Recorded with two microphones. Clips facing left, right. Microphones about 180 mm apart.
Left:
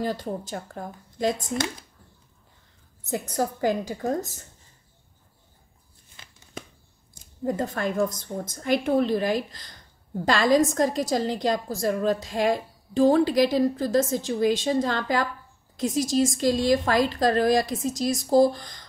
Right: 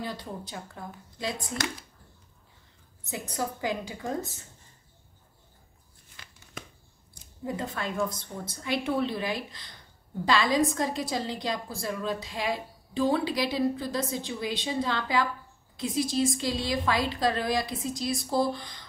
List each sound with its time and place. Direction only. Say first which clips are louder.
0.0 s a woman's voice: left 8 dB; 45° left (ahead or behind)
3.1 s a woman's voice: left 6 dB; 45° left (ahead or behind)
6.2 s a sound: left 1 dB; 25° left (ahead or behind)
7.4 s a woman's voice: left 6 dB; 45° left (ahead or behind)